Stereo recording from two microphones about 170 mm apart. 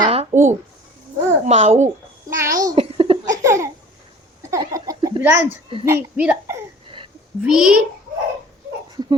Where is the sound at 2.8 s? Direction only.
35° right (ahead or behind).